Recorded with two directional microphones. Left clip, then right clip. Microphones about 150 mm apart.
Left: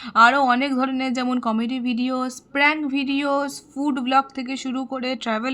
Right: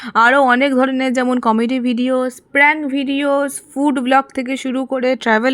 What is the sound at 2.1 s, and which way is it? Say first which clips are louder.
Speech: right 11 dB; 25° right (ahead or behind).